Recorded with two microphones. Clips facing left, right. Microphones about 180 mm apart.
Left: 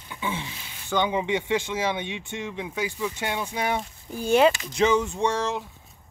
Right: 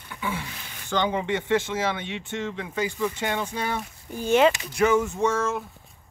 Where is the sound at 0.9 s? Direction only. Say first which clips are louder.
Left 1 dB; 15° left (ahead or behind).